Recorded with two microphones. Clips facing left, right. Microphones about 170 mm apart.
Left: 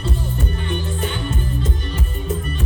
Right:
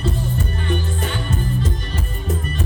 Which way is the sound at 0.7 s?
35° right (ahead or behind).